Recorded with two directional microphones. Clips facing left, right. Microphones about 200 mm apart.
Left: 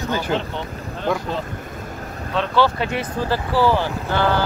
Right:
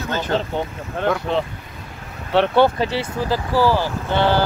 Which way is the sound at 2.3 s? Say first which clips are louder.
Right 4 dB; 60° right (ahead or behind).